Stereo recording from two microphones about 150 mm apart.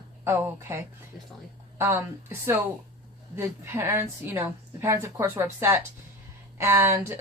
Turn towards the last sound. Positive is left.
turn(degrees=-15)  # may be behind; listen again after turning